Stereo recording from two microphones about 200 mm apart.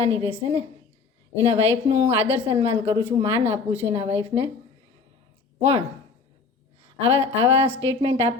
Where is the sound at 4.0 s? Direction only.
30° right (ahead or behind).